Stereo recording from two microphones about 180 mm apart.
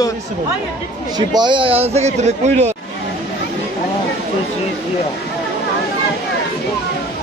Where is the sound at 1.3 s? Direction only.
25° right (ahead or behind).